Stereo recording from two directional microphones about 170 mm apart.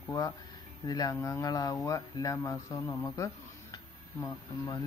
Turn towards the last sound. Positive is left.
turn(degrees=15)  # may be behind; listen again after turning